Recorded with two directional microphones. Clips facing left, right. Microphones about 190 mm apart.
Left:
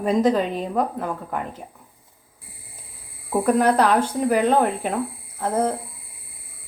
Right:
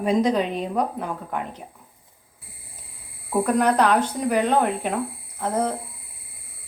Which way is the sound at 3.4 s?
5° left (ahead or behind).